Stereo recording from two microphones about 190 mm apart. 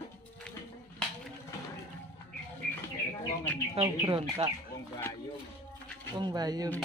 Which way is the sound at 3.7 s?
25° right (ahead or behind).